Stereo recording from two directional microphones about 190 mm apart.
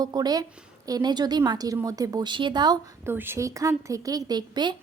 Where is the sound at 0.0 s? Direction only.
20° right (ahead or behind).